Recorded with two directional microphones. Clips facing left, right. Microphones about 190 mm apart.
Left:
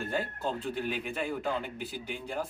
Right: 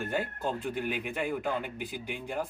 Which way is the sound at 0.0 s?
15° right (ahead or behind).